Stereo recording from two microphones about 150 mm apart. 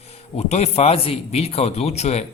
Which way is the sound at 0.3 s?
45° left (ahead or behind).